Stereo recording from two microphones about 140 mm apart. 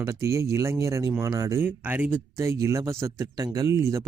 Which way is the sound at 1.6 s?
15° right (ahead or behind).